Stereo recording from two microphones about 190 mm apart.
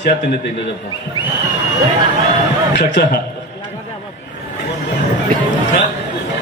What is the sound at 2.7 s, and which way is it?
Speech, 60° left (ahead or behind).